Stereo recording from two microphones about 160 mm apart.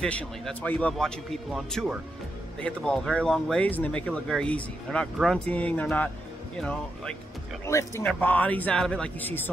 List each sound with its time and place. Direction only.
0.0 s speech: 5° left (ahead or behind)
7.6 s speech: 15° left (ahead or behind)